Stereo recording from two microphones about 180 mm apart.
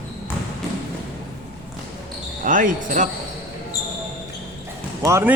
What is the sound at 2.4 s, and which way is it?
Speech, 45° right (ahead or behind).